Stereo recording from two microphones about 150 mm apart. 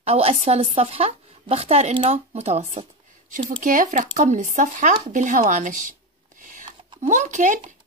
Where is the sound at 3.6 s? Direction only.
60° right (ahead or behind).